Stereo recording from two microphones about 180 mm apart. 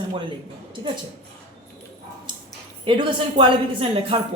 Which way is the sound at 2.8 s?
25° right (ahead or behind).